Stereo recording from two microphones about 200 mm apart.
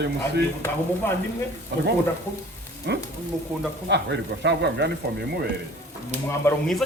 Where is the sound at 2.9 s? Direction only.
60° right (ahead or behind).